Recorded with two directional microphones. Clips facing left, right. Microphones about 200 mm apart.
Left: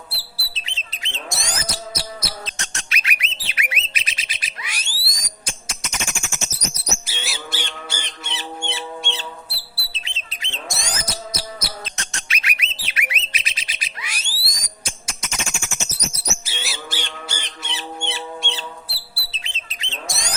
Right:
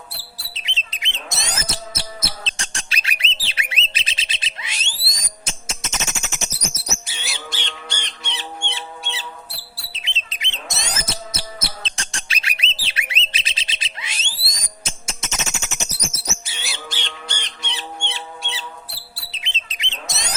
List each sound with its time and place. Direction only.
0.5 s bird: 20° right (ahead or behind)
7.0 s bird: centre (ahead or behind)
9.9 s bird: 20° right (ahead or behind)
16.1 s bird: centre (ahead or behind)
19.3 s bird: 20° right (ahead or behind)